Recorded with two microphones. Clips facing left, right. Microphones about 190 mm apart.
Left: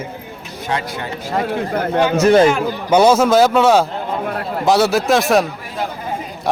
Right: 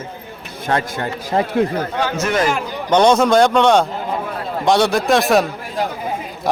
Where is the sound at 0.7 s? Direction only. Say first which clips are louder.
Right 3 dB; 50° right (ahead or behind).